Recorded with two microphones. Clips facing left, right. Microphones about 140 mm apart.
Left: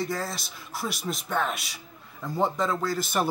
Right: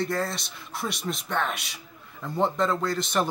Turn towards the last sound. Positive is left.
turn(degrees=5)  # may be behind; listen again after turning